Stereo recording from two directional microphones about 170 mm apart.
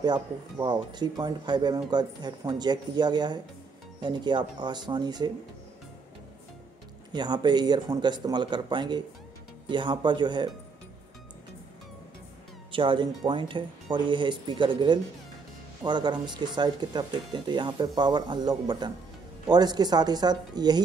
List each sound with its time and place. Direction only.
0.0 s speech: 25° right (ahead or behind)
7.1 s speech: 25° right (ahead or behind)
12.7 s speech: 30° right (ahead or behind)